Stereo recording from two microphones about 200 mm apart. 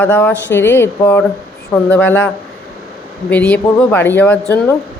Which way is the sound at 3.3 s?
5° left (ahead or behind).